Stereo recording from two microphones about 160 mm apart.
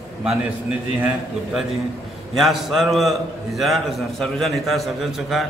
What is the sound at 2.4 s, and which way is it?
A man's voice, centre (ahead or behind).